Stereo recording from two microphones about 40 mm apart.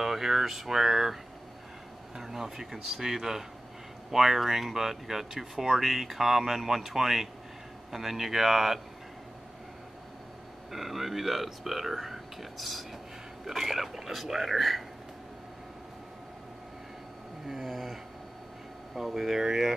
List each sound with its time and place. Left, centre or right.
0.0 s speech: centre
2.1 s speech: centre
10.7 s speech: centre
17.5 s a sound: centre
18.9 s speech: centre